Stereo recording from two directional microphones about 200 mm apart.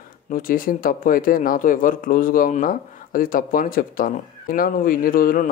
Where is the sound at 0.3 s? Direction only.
45° left (ahead or behind).